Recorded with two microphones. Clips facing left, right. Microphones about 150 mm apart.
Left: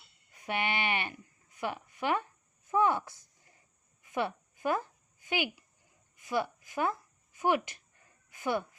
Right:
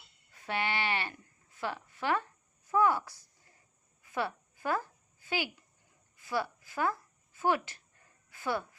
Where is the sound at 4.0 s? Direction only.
20° left (ahead or behind).